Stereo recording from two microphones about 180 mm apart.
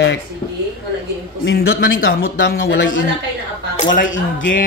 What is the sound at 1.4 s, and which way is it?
A man's voice, 55° left (ahead or behind).